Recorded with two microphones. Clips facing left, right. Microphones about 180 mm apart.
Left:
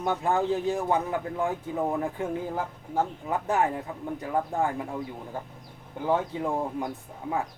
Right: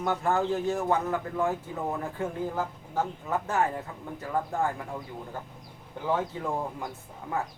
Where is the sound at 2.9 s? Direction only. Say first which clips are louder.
Left 2 dB; 15° left (ahead or behind).